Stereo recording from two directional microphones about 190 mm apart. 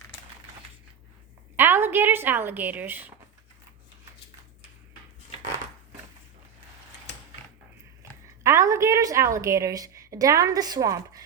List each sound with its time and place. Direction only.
1.5 s a woman's voice: 10° right (ahead or behind)
8.4 s a woman's voice: 15° right (ahead or behind)